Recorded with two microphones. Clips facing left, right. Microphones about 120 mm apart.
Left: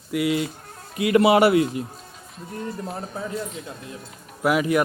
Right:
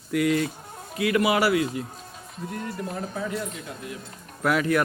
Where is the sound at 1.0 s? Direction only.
25° left (ahead or behind).